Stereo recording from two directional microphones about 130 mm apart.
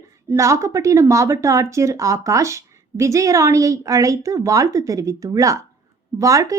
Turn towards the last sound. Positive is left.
turn(degrees=-25)  # may be behind; listen again after turning